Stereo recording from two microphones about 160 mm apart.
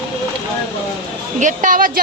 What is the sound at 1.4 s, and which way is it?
Speech, 55° right (ahead or behind).